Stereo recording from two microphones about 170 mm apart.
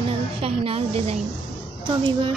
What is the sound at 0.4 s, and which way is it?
A woman's voice, 35° right (ahead or behind).